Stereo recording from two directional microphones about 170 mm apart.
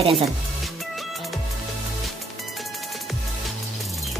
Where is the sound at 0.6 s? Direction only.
Centre (ahead or behind).